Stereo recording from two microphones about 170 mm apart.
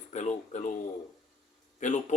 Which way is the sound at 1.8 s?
45° left (ahead or behind).